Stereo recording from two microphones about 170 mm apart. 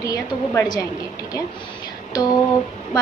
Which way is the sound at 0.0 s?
20° left (ahead or behind).